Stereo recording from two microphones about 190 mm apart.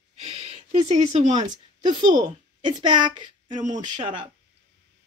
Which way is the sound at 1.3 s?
25° right (ahead or behind).